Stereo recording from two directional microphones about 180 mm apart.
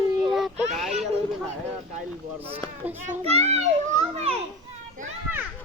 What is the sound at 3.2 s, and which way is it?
Speech, 35° right (ahead or behind).